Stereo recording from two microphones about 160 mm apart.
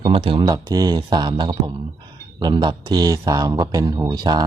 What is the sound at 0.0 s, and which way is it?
Speech, 35° right (ahead or behind).